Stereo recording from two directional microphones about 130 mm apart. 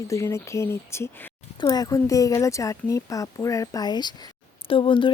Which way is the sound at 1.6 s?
30° left (ahead or behind).